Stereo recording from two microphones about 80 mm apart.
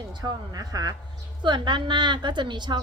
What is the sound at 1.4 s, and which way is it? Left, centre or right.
A woman's voice, right.